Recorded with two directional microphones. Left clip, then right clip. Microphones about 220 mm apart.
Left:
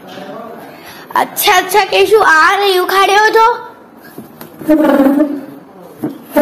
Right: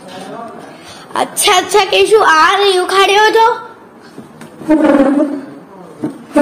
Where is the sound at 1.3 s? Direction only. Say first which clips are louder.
Right 1 dB; 10° right (ahead or behind).